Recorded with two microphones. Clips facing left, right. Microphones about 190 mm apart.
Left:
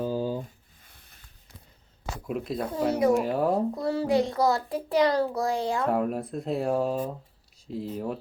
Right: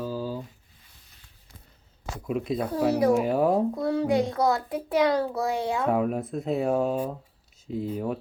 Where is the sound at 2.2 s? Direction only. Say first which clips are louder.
Right 3 dB; centre (ahead or behind).